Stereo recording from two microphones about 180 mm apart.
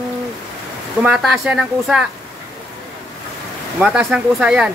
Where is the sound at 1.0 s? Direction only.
Centre (ahead or behind).